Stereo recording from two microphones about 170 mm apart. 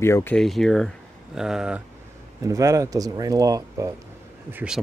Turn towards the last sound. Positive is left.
turn(degrees=-5)  # may be behind; listen again after turning